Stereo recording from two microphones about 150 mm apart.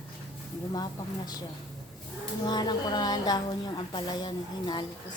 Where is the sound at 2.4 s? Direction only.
30° left (ahead or behind).